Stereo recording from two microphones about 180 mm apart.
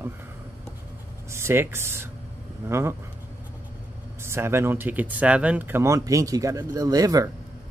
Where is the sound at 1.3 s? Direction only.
15° right (ahead or behind).